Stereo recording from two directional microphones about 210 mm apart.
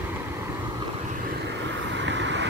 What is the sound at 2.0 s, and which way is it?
Vehicle, 60° right (ahead or behind).